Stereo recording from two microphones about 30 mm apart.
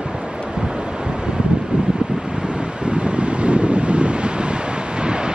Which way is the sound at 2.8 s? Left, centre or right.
Right.